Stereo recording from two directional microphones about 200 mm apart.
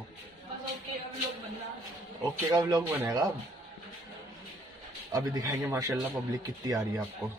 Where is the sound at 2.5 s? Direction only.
15° right (ahead or behind).